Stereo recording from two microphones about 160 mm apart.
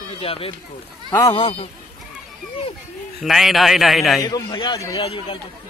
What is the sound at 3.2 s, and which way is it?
Speech, centre (ahead or behind).